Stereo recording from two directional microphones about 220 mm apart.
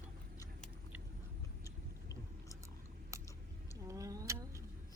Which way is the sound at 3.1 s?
15° right (ahead or behind).